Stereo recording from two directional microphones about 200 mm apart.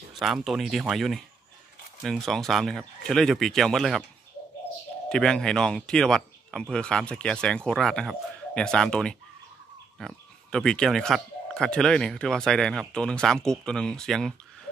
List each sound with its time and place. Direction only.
0.1 s speech: centre (ahead or behind)
5.1 s speech: 5° left (ahead or behind)